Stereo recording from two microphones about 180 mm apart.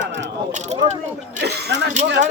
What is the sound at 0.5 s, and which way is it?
Speech, 40° right (ahead or behind).